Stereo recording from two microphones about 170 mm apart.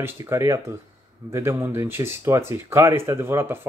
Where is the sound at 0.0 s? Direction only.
15° right (ahead or behind).